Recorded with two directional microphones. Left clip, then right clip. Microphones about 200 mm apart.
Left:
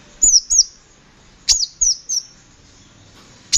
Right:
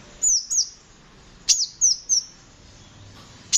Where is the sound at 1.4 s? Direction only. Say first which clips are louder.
Left 4 dB; 20° left (ahead or behind).